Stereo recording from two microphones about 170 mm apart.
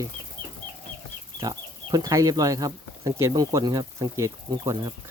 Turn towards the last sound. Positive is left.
turn(degrees=-25)  # may be behind; listen again after turning